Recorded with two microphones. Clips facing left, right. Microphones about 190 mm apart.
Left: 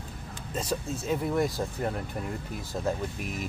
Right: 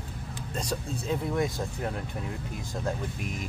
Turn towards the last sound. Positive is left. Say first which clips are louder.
# left 2 dB
turn(degrees=5)  # may be behind; listen again after turning